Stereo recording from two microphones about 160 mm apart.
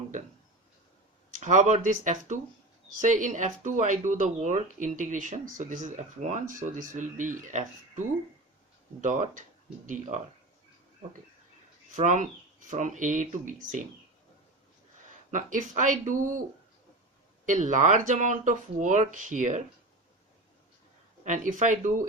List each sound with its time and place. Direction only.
1.3 s speech: 50° right (ahead or behind)
11.9 s speech: 50° right (ahead or behind)
15.3 s speech: 55° right (ahead or behind)
17.4 s speech: 50° right (ahead or behind)
21.2 s speech: 50° right (ahead or behind)